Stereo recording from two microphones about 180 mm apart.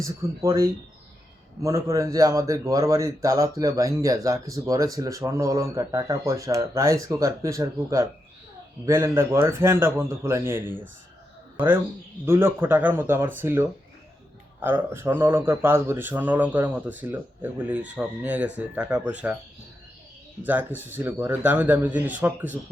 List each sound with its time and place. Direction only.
0.0 s a man's voice: 15° right (ahead or behind)
20.4 s a man's voice: 10° right (ahead or behind)